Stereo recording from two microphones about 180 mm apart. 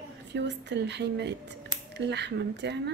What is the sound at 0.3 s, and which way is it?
Speech, 75° right (ahead or behind).